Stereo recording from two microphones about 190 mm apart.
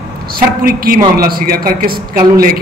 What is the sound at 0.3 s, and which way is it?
Speech, 50° right (ahead or behind).